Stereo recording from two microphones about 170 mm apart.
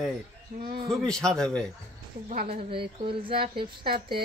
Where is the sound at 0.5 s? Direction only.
55° right (ahead or behind).